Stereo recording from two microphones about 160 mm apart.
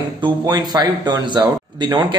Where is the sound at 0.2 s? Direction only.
25° right (ahead or behind).